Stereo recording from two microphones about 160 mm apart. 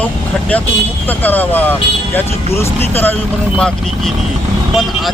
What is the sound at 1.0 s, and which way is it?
Speech, 10° left (ahead or behind).